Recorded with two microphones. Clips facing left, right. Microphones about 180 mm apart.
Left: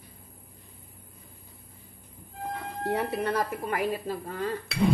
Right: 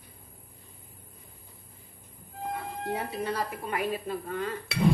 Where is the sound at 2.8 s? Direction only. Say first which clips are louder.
Left 5 dB; 65° left (ahead or behind).